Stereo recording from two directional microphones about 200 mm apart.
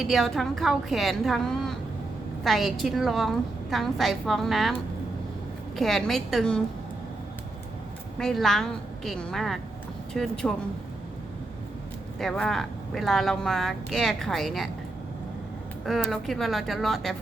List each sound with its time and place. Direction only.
0.0 s speech: centre (ahead or behind)
8.2 s speech: centre (ahead or behind)
12.2 s speech: centre (ahead or behind)
15.9 s speech: centre (ahead or behind)